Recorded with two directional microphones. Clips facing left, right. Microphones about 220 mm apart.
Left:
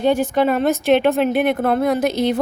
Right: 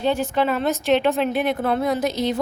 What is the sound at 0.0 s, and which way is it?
A woman's voice, 50° left (ahead or behind).